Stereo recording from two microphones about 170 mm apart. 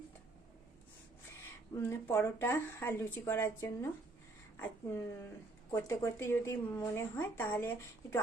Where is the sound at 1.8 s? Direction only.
15° left (ahead or behind).